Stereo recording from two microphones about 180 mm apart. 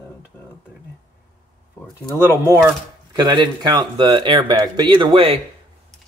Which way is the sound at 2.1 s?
15° right (ahead or behind).